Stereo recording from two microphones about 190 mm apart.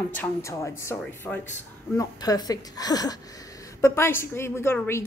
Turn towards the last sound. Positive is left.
turn(degrees=15)  # may be behind; listen again after turning